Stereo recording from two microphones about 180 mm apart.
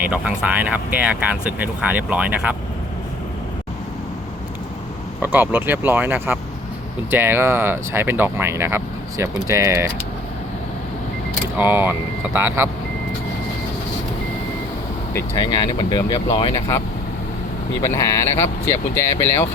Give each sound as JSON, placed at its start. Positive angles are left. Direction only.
{"t": 0.0, "sound": "speech", "side_deg": -5}
{"t": 5.2, "sound": "speech", "side_deg": -10}
{"t": 11.5, "sound": "speech", "side_deg": -10}
{"t": 15.1, "sound": "speech", "side_deg": 20}
{"t": 17.8, "sound": "speech", "side_deg": 15}